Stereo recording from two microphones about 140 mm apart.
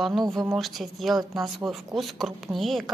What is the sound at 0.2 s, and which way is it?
Speech, 25° right (ahead or behind).